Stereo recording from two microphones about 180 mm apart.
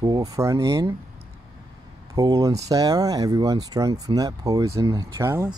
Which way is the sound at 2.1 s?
20° right (ahead or behind).